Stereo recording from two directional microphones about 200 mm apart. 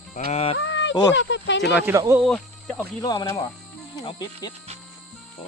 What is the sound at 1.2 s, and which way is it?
Speech, 65° left (ahead or behind).